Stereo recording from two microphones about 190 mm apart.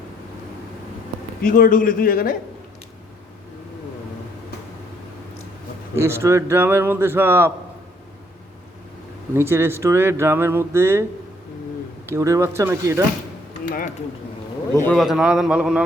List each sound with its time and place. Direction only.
1.4 s a man's voice: 45° left (ahead or behind)
5.9 s speech: 15° right (ahead or behind)
9.3 s speech: 10° right (ahead or behind)
12.1 s speech: 15° right (ahead or behind)
13.7 s speech: 45° left (ahead or behind)
14.9 s a man's voice: centre (ahead or behind)